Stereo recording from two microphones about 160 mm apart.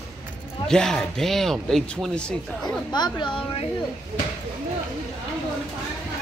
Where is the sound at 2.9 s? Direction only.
30° left (ahead or behind).